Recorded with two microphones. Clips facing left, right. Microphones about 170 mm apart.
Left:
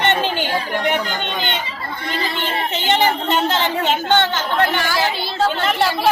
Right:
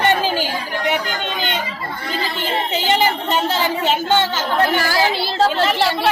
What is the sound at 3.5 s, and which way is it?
Speech, 40° right (ahead or behind).